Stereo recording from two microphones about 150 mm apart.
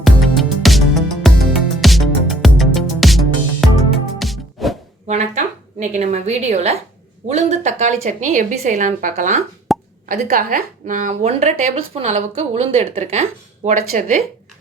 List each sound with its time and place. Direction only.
0.0 s music: centre (ahead or behind)
5.0 s a sound: 50° right (ahead or behind)
5.8 s a woman's voice: 50° right (ahead or behind)
9.7 s plop: centre (ahead or behind)
10.1 s a woman's voice: 65° right (ahead or behind)